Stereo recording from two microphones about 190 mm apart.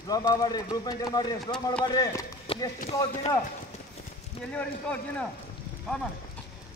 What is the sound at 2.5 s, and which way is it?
Clip-clop, 30° left (ahead or behind).